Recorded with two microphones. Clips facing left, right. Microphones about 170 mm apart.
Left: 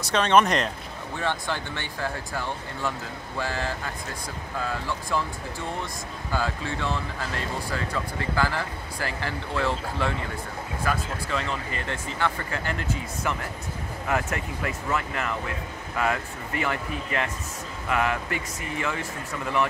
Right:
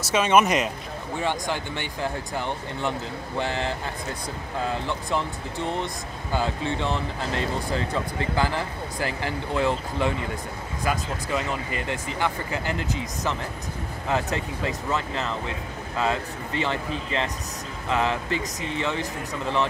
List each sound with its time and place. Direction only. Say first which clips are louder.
0.1 s speech: right 1 dB; 5° right (ahead or behind)
1.2 s speech: right 1 dB; 15° right (ahead or behind)
6.3 s speech: right 3 dB; 20° right (ahead or behind)
14.0 s speech: right 1 dB; 25° right (ahead or behind)